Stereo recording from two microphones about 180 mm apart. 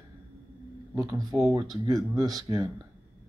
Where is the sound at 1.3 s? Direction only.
15° left (ahead or behind).